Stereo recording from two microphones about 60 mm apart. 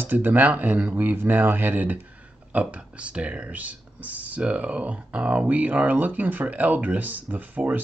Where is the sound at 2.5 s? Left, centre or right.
Right.